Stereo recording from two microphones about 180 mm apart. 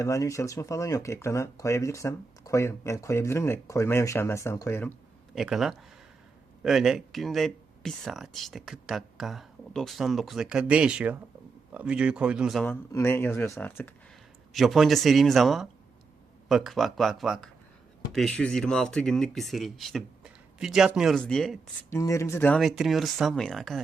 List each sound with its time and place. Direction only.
0.0 s speech: 15° left (ahead or behind)
5.3 s speech: centre (ahead or behind)
12.6 s speech: 15° left (ahead or behind)
14.5 s speech: centre (ahead or behind)
21.8 s speech: 15° left (ahead or behind); by 23.8 s centre (ahead or behind)